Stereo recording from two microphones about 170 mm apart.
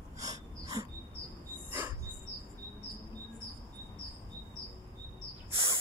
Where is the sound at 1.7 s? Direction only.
10° right (ahead or behind).